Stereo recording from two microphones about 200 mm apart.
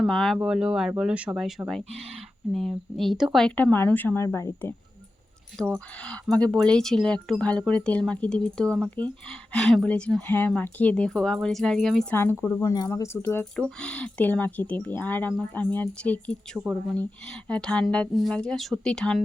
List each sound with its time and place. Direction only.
0.0 s speech: centre (ahead or behind)
5.7 s speech: 5° left (ahead or behind)